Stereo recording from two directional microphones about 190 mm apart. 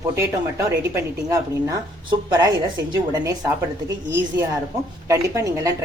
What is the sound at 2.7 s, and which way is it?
Speech, 20° right (ahead or behind).